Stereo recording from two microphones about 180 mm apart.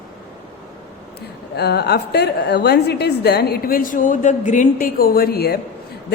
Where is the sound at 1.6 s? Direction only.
65° left (ahead or behind).